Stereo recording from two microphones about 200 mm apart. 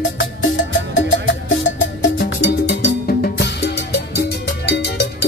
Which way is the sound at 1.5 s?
70° left (ahead or behind).